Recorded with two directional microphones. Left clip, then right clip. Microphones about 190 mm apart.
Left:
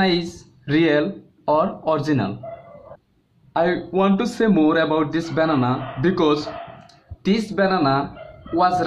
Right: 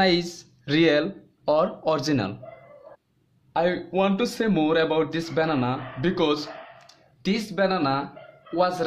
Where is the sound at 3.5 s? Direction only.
45° right (ahead or behind).